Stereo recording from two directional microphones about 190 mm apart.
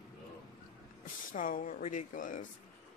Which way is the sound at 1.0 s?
45° left (ahead or behind).